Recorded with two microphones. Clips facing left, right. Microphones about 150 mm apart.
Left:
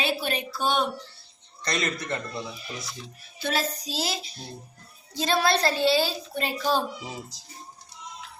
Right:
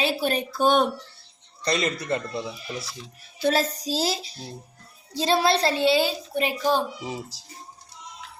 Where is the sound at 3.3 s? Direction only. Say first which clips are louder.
Right 5 dB; 40° right (ahead or behind); by 6.8 s 15° right (ahead or behind).